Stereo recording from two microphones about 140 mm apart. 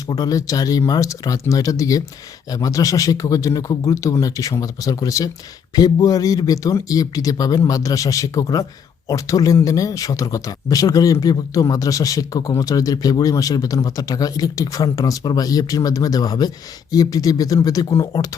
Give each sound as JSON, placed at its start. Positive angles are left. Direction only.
{"t": 0.1, "sound": "speech", "side_deg": 30}